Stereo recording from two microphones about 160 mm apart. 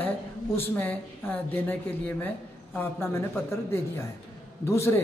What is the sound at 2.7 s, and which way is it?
Speech, 15° left (ahead or behind).